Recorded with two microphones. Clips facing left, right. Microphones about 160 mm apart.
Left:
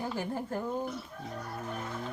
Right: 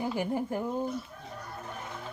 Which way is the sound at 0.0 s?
15° right (ahead or behind).